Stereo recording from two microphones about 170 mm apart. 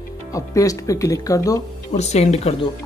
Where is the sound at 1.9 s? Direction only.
40° left (ahead or behind).